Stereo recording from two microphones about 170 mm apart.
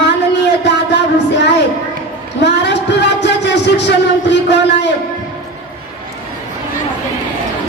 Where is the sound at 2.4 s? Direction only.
90° left.